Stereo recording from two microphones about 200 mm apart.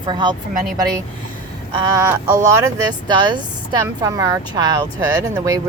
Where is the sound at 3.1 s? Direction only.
20° right (ahead or behind).